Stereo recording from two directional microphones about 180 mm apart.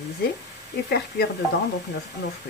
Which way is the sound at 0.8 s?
65° left (ahead or behind).